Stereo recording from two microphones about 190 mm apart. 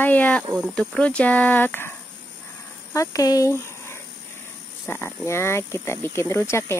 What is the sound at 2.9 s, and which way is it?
Speech, 15° left (ahead or behind).